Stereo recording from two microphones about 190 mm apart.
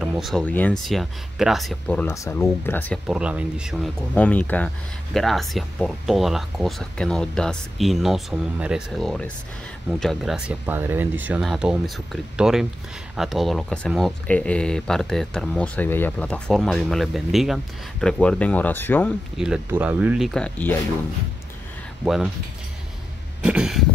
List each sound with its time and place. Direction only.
0.0 s speech: centre (ahead or behind)
2.0 s speech: 15° left (ahead or behind)
3.1 s speech: 5° right (ahead or behind)
4.1 s speech: 10° left (ahead or behind)
19.3 s speech: 5° right (ahead or behind)
22.0 s speech: centre (ahead or behind)
23.4 s speech: 5° right (ahead or behind)